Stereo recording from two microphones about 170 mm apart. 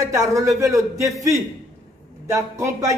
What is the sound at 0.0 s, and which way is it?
A man's voice, 20° right (ahead or behind).